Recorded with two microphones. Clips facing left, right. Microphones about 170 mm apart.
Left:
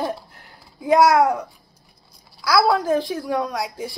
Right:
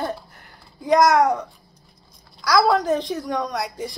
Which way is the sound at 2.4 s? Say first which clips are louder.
Even; 5° left (ahead or behind).